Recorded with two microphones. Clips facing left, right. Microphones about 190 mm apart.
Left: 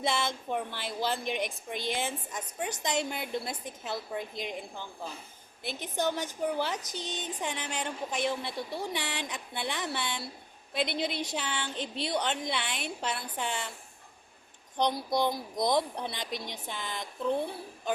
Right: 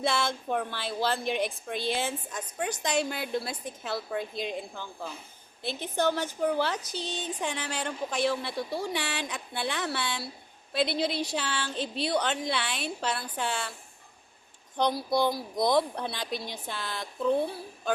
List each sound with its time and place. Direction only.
0.0 s a woman's voice: 15° left (ahead or behind)
5.6 s a woman's voice: 15° left (ahead or behind)
14.8 s a woman's voice: 20° left (ahead or behind)